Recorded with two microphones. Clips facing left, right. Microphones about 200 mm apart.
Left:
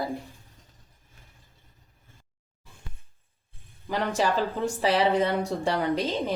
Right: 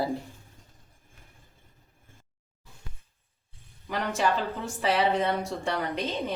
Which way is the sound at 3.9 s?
35° left (ahead or behind).